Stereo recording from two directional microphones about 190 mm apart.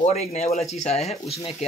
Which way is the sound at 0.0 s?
35° left (ahead or behind).